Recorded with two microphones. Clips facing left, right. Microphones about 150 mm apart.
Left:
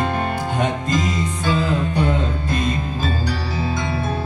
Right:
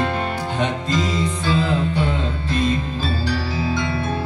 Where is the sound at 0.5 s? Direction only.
45° left (ahead or behind).